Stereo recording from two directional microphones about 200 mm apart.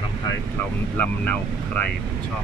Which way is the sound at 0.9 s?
10° left (ahead or behind).